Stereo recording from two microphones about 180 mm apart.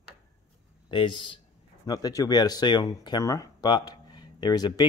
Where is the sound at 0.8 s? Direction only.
25° left (ahead or behind).